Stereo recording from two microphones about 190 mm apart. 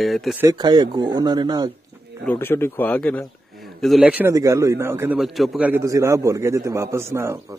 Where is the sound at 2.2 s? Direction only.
10° left (ahead or behind); by 5.2 s 15° right (ahead or behind).